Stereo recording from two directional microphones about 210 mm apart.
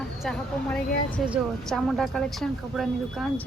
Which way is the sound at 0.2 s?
Centre (ahead or behind).